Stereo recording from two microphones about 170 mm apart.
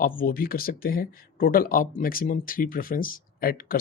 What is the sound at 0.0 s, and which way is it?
Speech, 55° left (ahead or behind).